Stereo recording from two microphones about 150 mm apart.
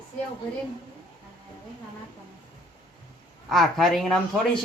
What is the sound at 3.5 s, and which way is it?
Speech, centre (ahead or behind).